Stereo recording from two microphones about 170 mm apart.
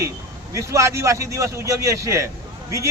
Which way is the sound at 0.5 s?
15° right (ahead or behind).